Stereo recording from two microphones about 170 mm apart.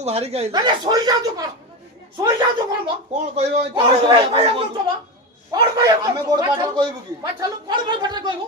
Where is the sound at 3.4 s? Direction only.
30° right (ahead or behind).